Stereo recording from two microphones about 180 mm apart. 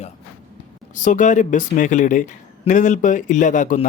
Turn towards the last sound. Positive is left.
turn(degrees=45)  # may be behind; listen again after turning